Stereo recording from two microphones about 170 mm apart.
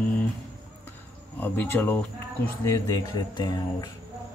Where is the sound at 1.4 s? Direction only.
10° left (ahead or behind).